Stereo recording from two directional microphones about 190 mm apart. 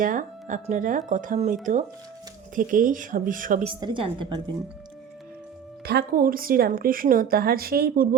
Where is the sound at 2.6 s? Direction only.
45° right (ahead or behind).